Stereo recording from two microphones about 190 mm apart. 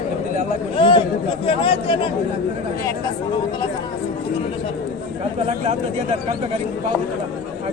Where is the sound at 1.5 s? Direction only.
30° left (ahead or behind).